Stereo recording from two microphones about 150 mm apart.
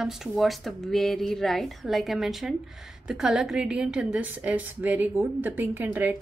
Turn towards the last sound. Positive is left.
turn(degrees=-10)  # may be behind; listen again after turning